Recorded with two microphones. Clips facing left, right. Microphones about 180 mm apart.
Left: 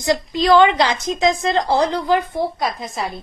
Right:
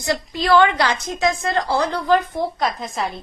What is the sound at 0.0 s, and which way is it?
A woman's voice, 20° left (ahead or behind).